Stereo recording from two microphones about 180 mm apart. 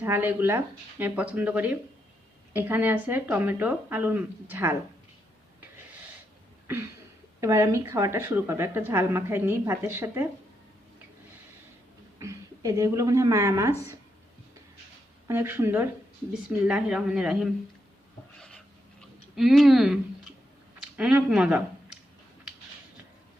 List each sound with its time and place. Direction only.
0.0 s a woman's voice: 10° right (ahead or behind)
7.4 s a woman's voice: 15° right (ahead or behind)
12.2 s a woman's voice: 15° right (ahead or behind)
15.3 s a woman's voice: 10° right (ahead or behind)
18.3 s a sound: 5° left (ahead or behind)
19.4 s a woman's voice: centre (ahead or behind)